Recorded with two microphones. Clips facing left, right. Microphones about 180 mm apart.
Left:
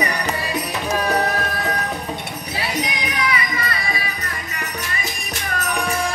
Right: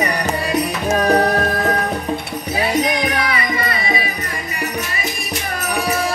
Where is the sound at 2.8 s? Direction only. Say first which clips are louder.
Right 6 dB; 50° right (ahead or behind).